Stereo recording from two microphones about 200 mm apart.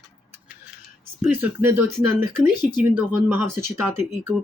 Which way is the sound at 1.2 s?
10° right (ahead or behind).